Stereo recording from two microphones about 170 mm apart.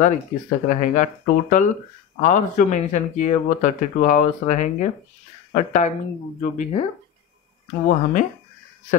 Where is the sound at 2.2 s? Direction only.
45° left (ahead or behind).